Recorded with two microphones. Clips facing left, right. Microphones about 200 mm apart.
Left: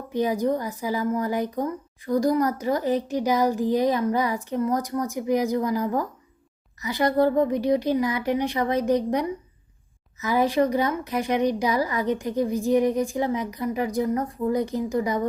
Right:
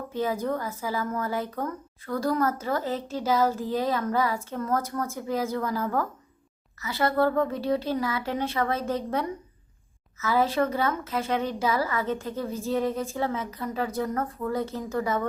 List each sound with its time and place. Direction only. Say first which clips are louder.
0.1 s speech: left 5 dB; 15° left (ahead or behind)